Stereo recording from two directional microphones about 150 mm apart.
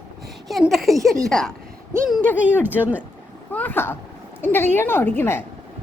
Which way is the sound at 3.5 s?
10° left (ahead or behind).